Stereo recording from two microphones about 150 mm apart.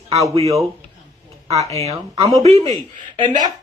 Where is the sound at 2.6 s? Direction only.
45° right (ahead or behind).